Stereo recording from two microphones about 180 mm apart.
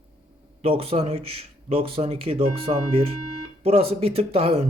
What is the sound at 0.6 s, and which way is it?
Speech, 30° right (ahead or behind).